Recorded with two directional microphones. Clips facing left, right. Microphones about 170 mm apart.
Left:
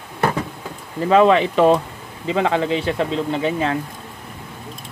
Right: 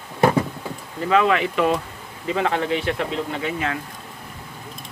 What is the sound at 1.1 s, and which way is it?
Speech, 30° left (ahead or behind).